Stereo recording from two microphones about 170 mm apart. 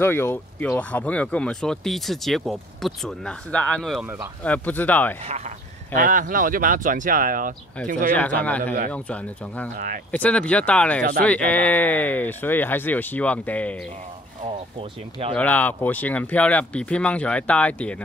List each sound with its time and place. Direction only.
0.0 s speech: 15° left (ahead or behind); by 4.3 s 10° right (ahead or behind)
4.4 s speech: 10° left (ahead or behind)
5.2 s speech: 40° right (ahead or behind)
5.9 s speech: 50° right (ahead or behind)
8.4 s speech: 10° left (ahead or behind)
9.8 s speech: 55° right (ahead or behind)
10.1 s speech: 5° left (ahead or behind)
14.4 s speech: 35° right (ahead or behind)
15.3 s speech: 10° left (ahead or behind)